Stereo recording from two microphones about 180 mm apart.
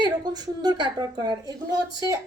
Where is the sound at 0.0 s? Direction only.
25° right (ahead or behind).